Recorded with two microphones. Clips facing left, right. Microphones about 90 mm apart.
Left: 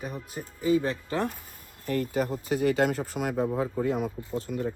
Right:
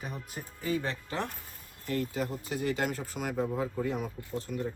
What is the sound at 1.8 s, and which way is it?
Speech, 55° left (ahead or behind).